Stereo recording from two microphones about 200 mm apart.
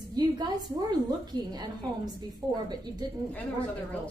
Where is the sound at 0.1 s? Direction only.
20° right (ahead or behind).